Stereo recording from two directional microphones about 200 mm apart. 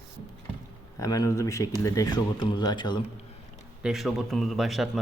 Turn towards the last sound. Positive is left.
turn(degrees=0)  # may be behind; listen again after turning